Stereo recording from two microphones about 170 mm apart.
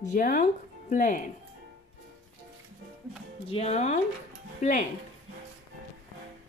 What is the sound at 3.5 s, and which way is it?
Speech, 40° left (ahead or behind).